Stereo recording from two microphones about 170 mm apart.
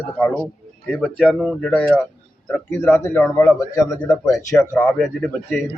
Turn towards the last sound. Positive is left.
turn(degrees=0)  # may be behind; listen again after turning